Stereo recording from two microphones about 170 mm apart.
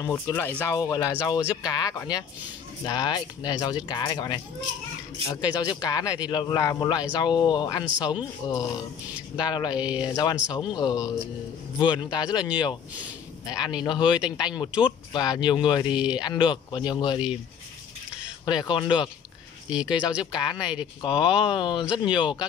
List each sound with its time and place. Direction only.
0.0 s speech: 10° left (ahead or behind)
0.7 s speech: 20° left (ahead or behind)
9.8 s speech: 5° right (ahead or behind)
10.0 s speech: 25° left (ahead or behind)
13.8 s speech: 25° left (ahead or behind)
18.4 s speech: 25° left (ahead or behind)
19.7 s speech: 5° right (ahead or behind)
20.3 s speech: 25° left (ahead or behind)